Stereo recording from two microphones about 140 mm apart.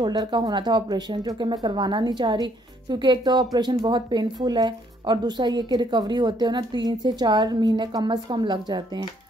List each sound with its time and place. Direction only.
0.0 s speech: 30° right (ahead or behind)